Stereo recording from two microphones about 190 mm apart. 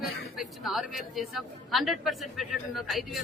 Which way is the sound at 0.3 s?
Centre (ahead or behind).